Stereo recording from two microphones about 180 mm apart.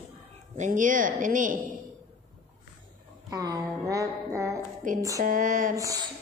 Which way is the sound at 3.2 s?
20° right (ahead or behind).